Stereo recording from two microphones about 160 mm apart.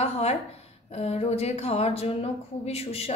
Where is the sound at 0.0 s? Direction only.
40° left (ahead or behind).